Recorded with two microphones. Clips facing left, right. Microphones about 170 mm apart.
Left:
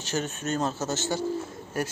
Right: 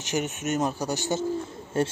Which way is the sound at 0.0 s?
15° right (ahead or behind).